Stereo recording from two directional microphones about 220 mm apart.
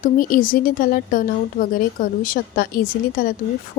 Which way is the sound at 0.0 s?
40° left (ahead or behind).